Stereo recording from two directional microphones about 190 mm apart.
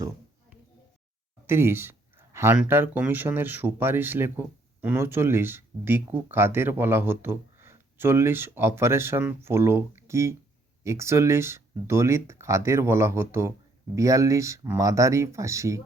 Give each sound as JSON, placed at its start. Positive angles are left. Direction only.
{"t": 1.5, "sound": "speech", "side_deg": -15}